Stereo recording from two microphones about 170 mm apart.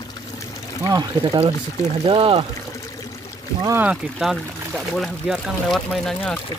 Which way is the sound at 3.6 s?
10° right (ahead or behind).